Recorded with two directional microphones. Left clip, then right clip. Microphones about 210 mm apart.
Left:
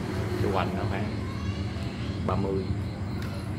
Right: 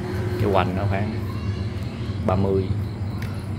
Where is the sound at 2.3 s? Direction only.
35° right (ahead or behind).